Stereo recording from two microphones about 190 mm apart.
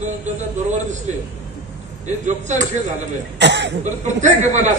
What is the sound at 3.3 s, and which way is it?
Speech, 65° right (ahead or behind).